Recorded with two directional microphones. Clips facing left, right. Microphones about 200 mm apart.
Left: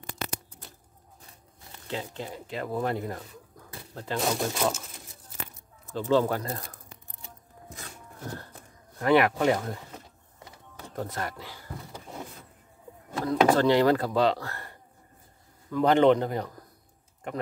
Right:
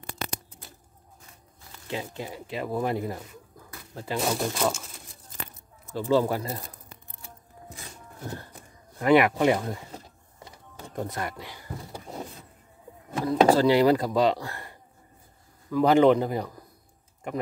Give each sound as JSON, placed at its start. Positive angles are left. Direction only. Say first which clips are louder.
{"t": 1.9, "sound": "speech", "louder": "right 1 dB", "side_deg": -10}
{"t": 5.9, "sound": "speech", "louder": "right 1 dB", "side_deg": -10}
{"t": 8.9, "sound": "speech", "louder": "right 2 dB", "side_deg": -15}
{"t": 11.0, "sound": "speech", "louder": "right 1 dB", "side_deg": -15}
{"t": 13.1, "sound": "a sound", "louder": "right 1 dB", "side_deg": -10}
{"t": 13.6, "sound": "speech", "louder": "right 2 dB", "side_deg": -10}